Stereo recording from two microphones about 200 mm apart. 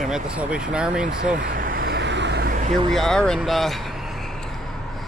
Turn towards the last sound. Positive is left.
turn(degrees=0)  # may be behind; listen again after turning